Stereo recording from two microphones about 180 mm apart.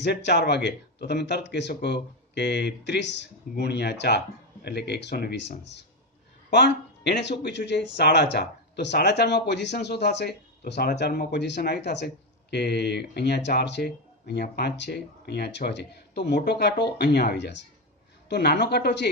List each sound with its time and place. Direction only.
0.0 s speech: 70° left (ahead or behind)